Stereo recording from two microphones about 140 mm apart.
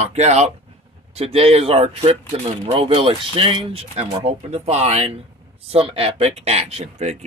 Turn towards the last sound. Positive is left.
turn(degrees=-50)  # may be behind; listen again after turning